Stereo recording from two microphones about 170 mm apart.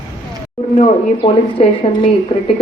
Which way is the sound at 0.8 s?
35° left (ahead or behind).